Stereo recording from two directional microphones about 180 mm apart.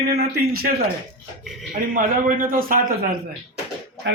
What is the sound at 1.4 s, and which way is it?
Speech, centre (ahead or behind).